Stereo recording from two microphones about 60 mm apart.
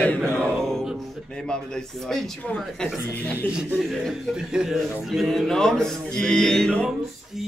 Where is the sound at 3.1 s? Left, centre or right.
Left.